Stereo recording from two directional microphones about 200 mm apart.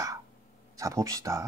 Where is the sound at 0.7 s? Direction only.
15° right (ahead or behind).